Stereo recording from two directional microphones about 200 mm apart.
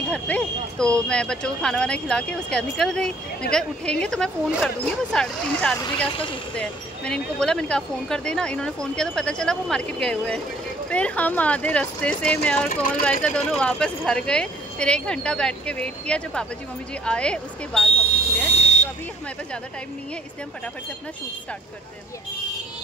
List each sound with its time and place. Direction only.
0.1 s speech: 5° left (ahead or behind)
12.6 s speech: 45° left (ahead or behind)
13.0 s speech: 5° left (ahead or behind)
18.5 s a sound: 30° left (ahead or behind)